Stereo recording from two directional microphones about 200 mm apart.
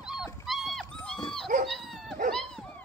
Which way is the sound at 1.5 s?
40° right (ahead or behind).